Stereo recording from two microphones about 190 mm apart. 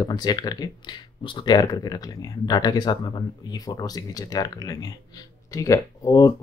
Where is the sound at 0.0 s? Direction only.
20° left (ahead or behind).